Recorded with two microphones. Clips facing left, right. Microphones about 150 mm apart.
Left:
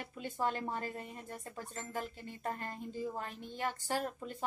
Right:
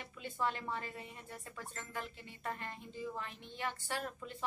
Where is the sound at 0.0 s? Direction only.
45° left (ahead or behind).